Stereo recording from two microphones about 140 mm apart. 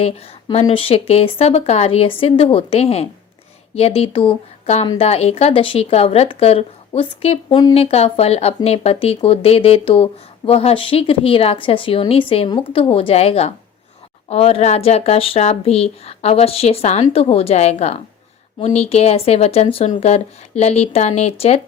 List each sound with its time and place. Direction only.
0.0 s speech: 45° left (ahead or behind)